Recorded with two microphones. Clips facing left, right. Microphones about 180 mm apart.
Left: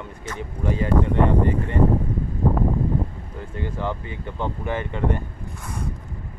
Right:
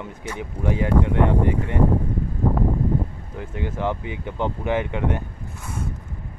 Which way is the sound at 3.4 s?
15° right (ahead or behind).